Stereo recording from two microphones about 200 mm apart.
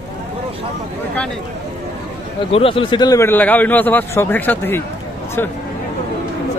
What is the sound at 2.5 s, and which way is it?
A man's voice, 25° left (ahead or behind).